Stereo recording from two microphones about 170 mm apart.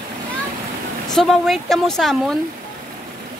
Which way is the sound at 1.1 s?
Centre (ahead or behind).